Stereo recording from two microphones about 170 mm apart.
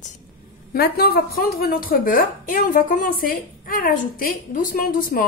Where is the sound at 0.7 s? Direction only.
65° left (ahead or behind).